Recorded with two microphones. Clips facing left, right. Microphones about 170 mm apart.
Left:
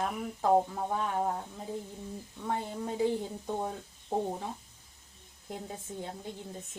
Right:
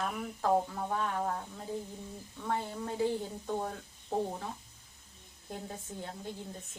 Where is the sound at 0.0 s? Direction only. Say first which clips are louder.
Left 2 dB; 20° left (ahead or behind).